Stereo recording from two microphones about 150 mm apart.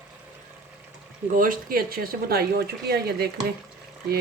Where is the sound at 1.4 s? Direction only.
70° right (ahead or behind).